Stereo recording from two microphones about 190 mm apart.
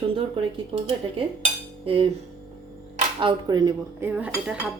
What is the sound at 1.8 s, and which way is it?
Cutlery, 30° right (ahead or behind).